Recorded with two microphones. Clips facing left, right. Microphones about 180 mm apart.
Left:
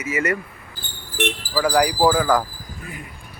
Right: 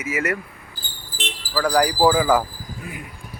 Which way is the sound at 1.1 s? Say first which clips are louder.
Left 11 dB; 70° left (ahead or behind).